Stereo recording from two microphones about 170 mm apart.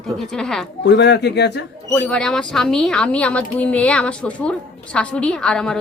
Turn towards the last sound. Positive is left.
turn(degrees=5)  # may be behind; listen again after turning